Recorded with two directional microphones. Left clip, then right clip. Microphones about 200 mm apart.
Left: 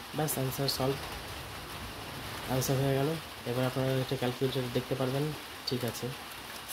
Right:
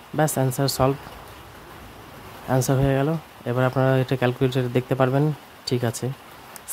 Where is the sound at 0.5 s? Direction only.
45° right (ahead or behind).